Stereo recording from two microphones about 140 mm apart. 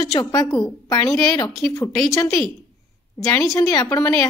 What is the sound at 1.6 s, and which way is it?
Speech, 20° left (ahead or behind).